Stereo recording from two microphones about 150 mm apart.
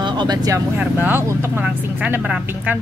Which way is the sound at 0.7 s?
15° right (ahead or behind).